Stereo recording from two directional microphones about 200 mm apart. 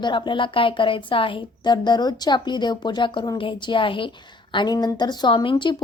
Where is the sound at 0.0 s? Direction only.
25° left (ahead or behind).